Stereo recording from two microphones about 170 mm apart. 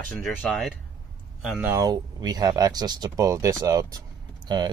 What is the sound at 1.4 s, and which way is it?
Speech, 5° right (ahead or behind).